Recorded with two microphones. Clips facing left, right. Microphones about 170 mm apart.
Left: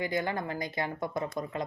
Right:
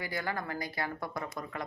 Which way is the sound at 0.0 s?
20° left (ahead or behind).